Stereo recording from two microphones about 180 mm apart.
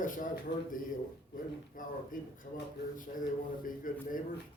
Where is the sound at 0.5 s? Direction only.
70° left (ahead or behind).